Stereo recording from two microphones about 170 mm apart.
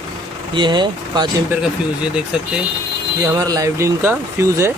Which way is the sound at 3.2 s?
20° right (ahead or behind).